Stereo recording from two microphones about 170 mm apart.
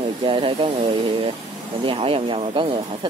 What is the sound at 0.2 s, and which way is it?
Speech, 30° right (ahead or behind).